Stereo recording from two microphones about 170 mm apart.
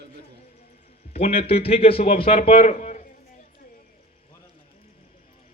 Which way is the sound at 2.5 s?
40° left (ahead or behind).